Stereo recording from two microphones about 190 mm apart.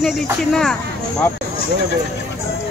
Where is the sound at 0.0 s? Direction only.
Centre (ahead or behind).